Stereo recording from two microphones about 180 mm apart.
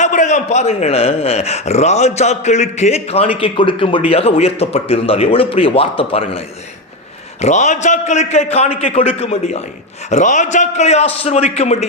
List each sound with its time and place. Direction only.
0.0 s a man's voice: 40° left (ahead or behind)
7.4 s a man's voice: 40° left (ahead or behind)